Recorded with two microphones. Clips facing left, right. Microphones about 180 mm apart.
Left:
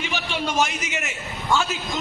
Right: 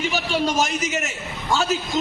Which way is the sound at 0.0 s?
40° right (ahead or behind).